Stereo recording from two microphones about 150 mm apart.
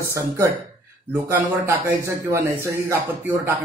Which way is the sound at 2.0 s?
15° right (ahead or behind).